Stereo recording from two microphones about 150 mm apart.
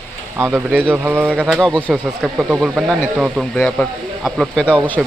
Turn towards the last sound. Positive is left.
turn(degrees=-10)  # may be behind; listen again after turning